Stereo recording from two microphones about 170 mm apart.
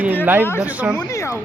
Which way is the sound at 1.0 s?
20° left (ahead or behind).